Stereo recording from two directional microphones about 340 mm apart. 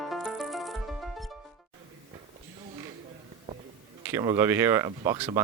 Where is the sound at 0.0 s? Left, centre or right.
Centre.